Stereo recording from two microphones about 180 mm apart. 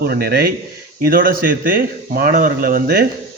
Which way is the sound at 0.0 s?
60° right (ahead or behind).